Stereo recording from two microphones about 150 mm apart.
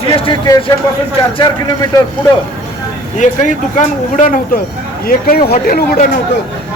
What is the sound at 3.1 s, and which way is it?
Speech, 55° left (ahead or behind).